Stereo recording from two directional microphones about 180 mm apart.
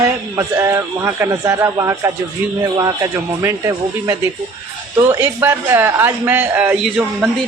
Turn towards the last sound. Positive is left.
turn(degrees=-10)  # may be behind; listen again after turning